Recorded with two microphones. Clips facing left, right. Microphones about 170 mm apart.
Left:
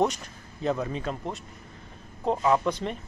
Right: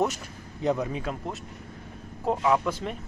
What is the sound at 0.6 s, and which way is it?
Speech, 15° right (ahead or behind).